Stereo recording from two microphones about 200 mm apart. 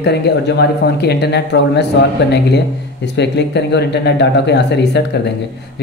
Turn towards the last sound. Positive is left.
turn(degrees=60)  # may be behind; listen again after turning